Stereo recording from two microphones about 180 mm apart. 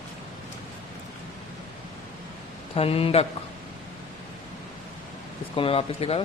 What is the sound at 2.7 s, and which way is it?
Speech, 35° left (ahead or behind).